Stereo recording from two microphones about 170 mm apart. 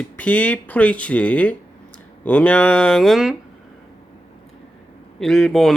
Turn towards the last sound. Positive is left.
turn(degrees=0)  # may be behind; listen again after turning